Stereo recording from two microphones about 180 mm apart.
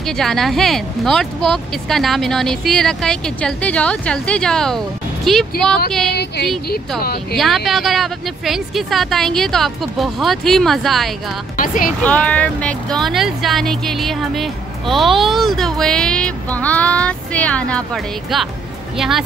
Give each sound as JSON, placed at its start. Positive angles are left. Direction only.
{"t": 0.0, "sound": "speech", "side_deg": 0}
{"t": 6.0, "sound": "speech", "side_deg": 65}
{"t": 7.3, "sound": "speech", "side_deg": 0}
{"t": 11.5, "sound": "speech", "side_deg": 50}
{"t": 12.0, "sound": "speech", "side_deg": 5}